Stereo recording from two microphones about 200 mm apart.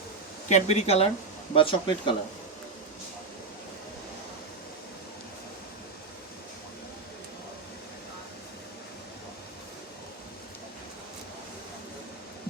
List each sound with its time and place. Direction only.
0.4 s speech: 35° left (ahead or behind)